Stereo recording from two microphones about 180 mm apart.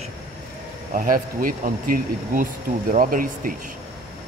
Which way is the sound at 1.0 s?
50° right (ahead or behind).